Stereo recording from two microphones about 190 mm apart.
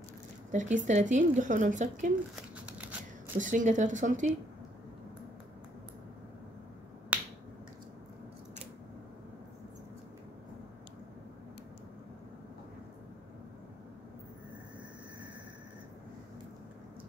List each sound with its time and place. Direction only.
0.5 s a woman's voice: 40° right (ahead or behind)
2.6 s shuffling cards: 5° right (ahead or behind)
3.3 s a woman's voice: 40° right (ahead or behind)
7.1 s finger snapping: 10° right (ahead or behind)